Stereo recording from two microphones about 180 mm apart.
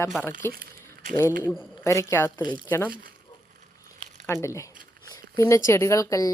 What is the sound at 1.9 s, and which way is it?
Speech, 15° left (ahead or behind).